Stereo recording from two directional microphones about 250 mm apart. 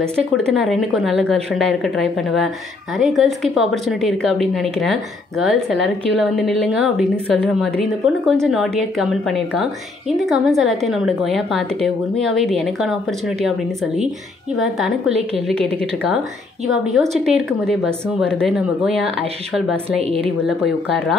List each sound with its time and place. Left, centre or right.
0.0 s a woman's voice: centre
15.0 s a woman's voice: right
15.4 s a woman's voice: centre
17.2 s a woman's voice: centre
20.0 s a woman's voice: right
20.4 s a woman's voice: centre